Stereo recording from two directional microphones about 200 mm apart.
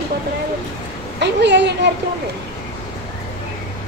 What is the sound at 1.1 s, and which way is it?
Speech, 60° right (ahead or behind).